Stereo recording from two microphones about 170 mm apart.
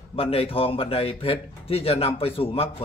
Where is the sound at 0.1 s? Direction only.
35° left (ahead or behind).